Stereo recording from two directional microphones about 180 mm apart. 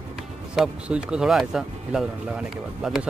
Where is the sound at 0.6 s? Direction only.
5° right (ahead or behind).